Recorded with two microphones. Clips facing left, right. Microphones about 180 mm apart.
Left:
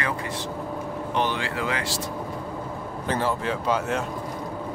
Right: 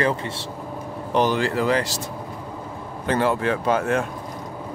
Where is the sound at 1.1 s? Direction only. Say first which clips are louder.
Right 7 dB; 40° right (ahead or behind).